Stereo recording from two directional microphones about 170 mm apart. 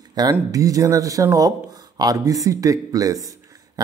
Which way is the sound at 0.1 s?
20° right (ahead or behind).